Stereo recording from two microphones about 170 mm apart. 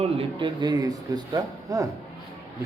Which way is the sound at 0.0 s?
30° right (ahead or behind).